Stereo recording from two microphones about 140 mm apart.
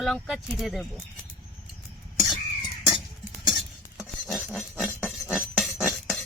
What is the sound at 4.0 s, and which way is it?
Dishes, centre (ahead or behind).